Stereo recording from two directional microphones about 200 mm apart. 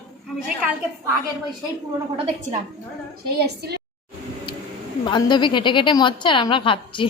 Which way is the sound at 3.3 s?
55° right (ahead or behind).